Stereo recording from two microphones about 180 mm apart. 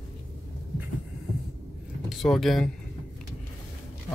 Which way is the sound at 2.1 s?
Centre (ahead or behind).